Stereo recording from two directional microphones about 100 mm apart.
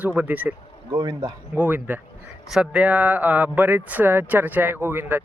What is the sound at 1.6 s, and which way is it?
A man's voice, 15° right (ahead or behind).